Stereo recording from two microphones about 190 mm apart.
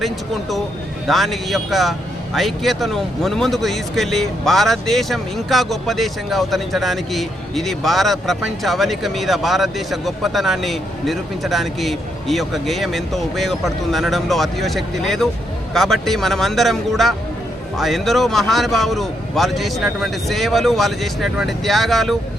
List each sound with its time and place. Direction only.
1.0 s a man's voice: centre (ahead or behind)